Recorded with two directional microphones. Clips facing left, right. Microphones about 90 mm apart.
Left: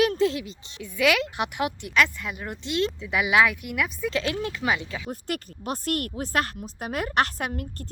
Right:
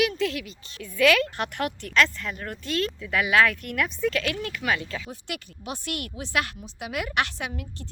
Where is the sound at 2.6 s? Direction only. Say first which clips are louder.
Left 2 dB; 20° left (ahead or behind); by 4.1 s 5° left (ahead or behind).